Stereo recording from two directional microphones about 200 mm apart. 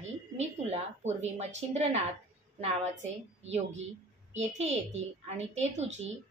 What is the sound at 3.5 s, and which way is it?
A woman's voice, 30° right (ahead or behind).